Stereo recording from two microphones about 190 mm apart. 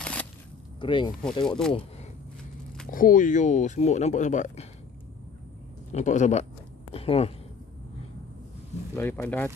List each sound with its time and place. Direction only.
0.0 s a sound: 5° left (ahead or behind)
0.7 s speech: 25° left (ahead or behind)
2.9 s speech: 45° left (ahead or behind)
5.9 s a woman's voice: 40° left (ahead or behind)
8.9 s speech: 10° left (ahead or behind)